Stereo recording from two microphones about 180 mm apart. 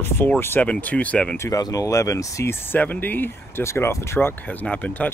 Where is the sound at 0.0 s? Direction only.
10° left (ahead or behind).